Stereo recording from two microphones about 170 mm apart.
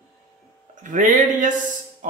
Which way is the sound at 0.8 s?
50° right (ahead or behind).